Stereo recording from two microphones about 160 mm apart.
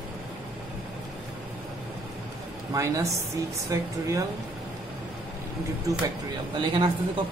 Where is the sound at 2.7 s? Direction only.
20° right (ahead or behind).